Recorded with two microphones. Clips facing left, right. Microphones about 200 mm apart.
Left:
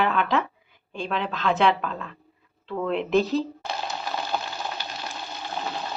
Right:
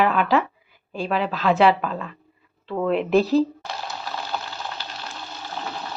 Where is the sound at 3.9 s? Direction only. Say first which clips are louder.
Left 1 dB; 20° left (ahead or behind).